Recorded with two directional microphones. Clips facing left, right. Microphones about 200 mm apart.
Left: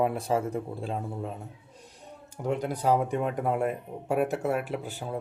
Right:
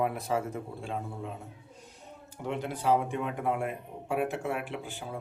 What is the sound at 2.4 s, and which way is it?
A man's voice, 40° left (ahead or behind).